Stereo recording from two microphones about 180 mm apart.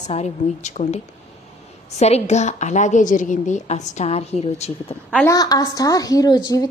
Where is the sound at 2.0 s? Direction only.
40° left (ahead or behind).